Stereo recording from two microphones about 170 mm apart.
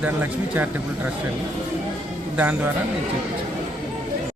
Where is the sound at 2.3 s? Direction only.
10° right (ahead or behind).